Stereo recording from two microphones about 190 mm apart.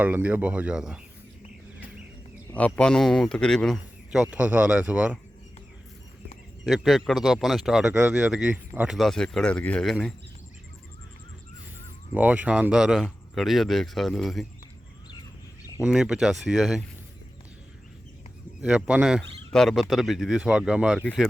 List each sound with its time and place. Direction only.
0.0 s speech: 10° right (ahead or behind)
2.6 s a man's voice: 5° left (ahead or behind)
6.7 s a man's voice: centre (ahead or behind)
12.1 s a man's voice: 10° right (ahead or behind)
15.8 s a man's voice: 5° right (ahead or behind)
18.6 s a man's voice: 5° right (ahead or behind)
21.0 s speech: 5° left (ahead or behind)